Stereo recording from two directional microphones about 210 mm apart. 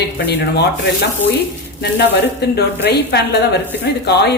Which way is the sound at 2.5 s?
50° left (ahead or behind).